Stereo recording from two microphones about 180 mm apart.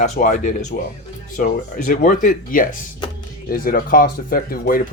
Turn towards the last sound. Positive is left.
turn(degrees=55)  # may be behind; listen again after turning